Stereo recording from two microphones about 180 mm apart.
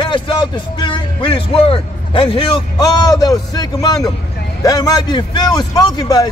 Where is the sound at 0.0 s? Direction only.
25° left (ahead or behind).